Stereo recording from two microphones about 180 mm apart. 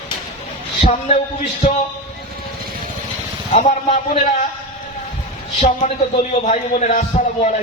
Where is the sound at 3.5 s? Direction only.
40° left (ahead or behind).